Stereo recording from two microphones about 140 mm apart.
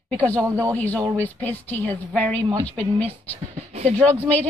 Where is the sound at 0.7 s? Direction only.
10° left (ahead or behind).